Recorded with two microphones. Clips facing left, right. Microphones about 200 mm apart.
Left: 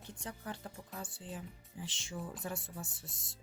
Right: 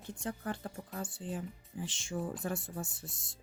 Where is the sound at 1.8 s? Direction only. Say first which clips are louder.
Right 6 dB; 50° right (ahead or behind).